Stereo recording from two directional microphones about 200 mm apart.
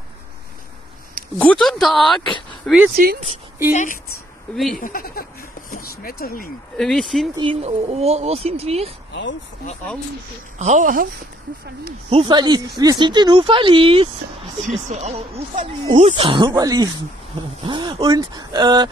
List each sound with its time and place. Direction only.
1.4 s speech: 5° left (ahead or behind)
3.0 s speech: 45° right (ahead or behind)
3.7 s speech: 40° left (ahead or behind)
6.8 s speech: centre (ahead or behind)
7.3 s speech: 30° right (ahead or behind)
10.6 s speech: 35° right (ahead or behind)
12.1 s speech: 25° right (ahead or behind)